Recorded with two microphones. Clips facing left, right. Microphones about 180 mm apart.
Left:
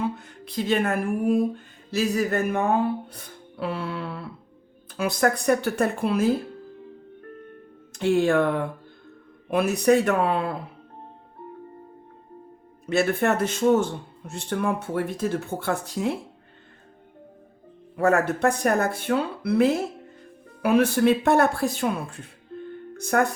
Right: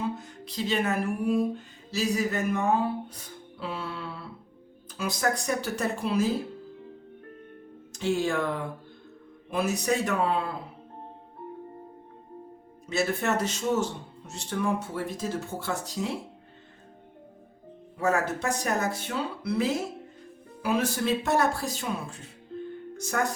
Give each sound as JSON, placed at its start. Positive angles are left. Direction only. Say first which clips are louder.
{"t": 0.2, "sound": "music", "louder": "left 4 dB", "side_deg": 55}
{"t": 4.9, "sound": "speech", "louder": "left 5 dB", "side_deg": 60}
{"t": 7.9, "sound": "speech", "louder": "left 7 dB", "side_deg": 60}
{"t": 12.8, "sound": "speech", "louder": "left 6 dB", "side_deg": 60}
{"t": 17.9, "sound": "speech", "louder": "left 5 dB", "side_deg": 60}